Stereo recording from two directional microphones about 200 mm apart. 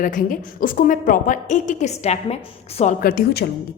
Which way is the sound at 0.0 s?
45° left (ahead or behind).